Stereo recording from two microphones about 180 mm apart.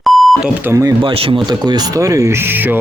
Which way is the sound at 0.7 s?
15° right (ahead or behind).